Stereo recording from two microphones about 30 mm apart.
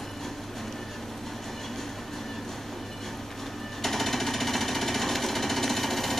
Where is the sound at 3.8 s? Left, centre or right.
Centre.